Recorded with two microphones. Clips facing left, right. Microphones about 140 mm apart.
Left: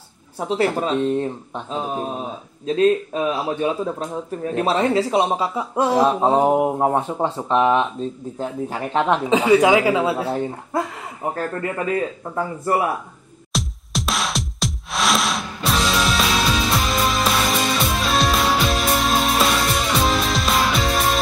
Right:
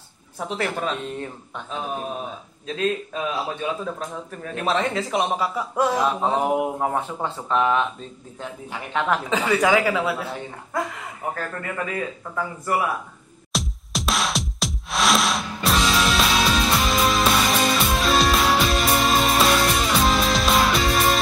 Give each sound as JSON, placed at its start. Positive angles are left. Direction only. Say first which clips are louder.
{"t": 0.4, "sound": "speech", "louder": "left 6 dB", "side_deg": 30}
{"t": 8.4, "sound": "speech", "louder": "left 7 dB", "side_deg": 40}
{"t": 9.0, "sound": "speech", "louder": "left 5 dB", "side_deg": 25}
{"t": 11.3, "sound": "speech", "louder": "left 5 dB", "side_deg": 30}
{"t": 13.5, "sound": "music", "louder": "left 2 dB", "side_deg": 0}